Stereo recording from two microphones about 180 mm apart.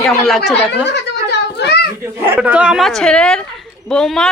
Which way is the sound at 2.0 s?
10° right (ahead or behind).